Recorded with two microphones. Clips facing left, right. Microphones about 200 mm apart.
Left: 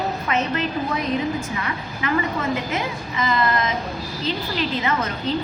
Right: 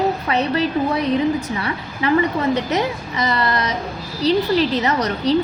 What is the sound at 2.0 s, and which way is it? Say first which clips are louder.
A woman's voice: right 6 dB; 35° right (ahead or behind).